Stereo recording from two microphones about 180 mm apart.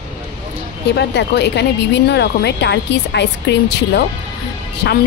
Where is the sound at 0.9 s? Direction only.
70° left (ahead or behind).